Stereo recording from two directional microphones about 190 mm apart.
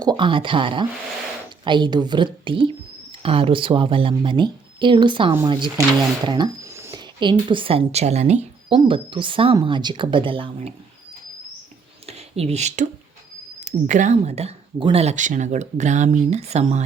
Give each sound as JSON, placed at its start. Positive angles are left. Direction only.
{"t": 0.0, "sound": "speech", "side_deg": -25}
{"t": 6.2, "sound": "a sound", "side_deg": -25}
{"t": 7.2, "sound": "speech", "side_deg": -25}
{"t": 12.0, "sound": "speech", "side_deg": -35}